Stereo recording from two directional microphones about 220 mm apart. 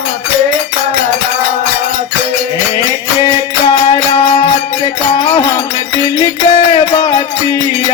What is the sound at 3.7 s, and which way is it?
Music, 25° left (ahead or behind).